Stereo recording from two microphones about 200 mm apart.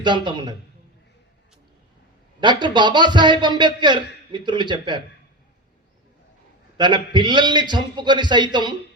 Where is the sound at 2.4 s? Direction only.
20° right (ahead or behind).